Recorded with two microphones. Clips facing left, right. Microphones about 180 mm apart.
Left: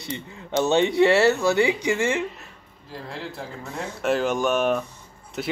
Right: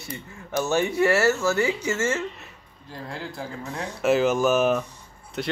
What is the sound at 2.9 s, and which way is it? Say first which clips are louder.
Speech: even; centre (ahead or behind).